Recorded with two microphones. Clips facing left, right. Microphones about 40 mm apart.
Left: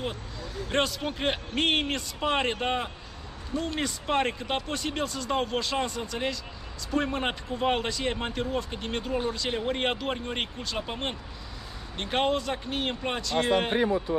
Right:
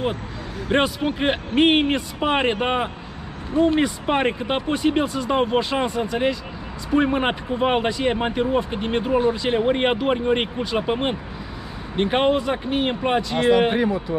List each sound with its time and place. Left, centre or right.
0.7 s speech: right